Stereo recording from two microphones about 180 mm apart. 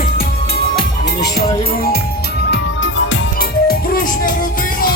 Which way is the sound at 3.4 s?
55° left (ahead or behind).